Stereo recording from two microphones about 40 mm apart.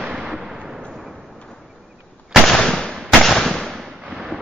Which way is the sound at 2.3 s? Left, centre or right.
Centre.